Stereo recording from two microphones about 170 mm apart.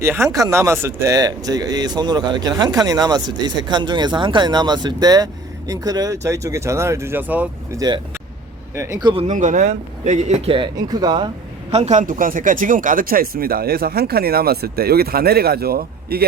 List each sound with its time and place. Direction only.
0.0 s speech: 15° right (ahead or behind)
7.8 s speech: 25° right (ahead or behind)
9.2 s speech: 45° right (ahead or behind); by 11.3 s 25° right (ahead or behind)
11.7 s speech: 40° right (ahead or behind); by 16.2 s 65° right (ahead or behind)